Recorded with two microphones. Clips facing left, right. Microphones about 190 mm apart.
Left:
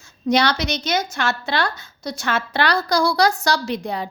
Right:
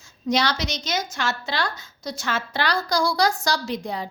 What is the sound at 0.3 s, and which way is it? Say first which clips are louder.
A woman's voice: left 4 dB; 60° left (ahead or behind).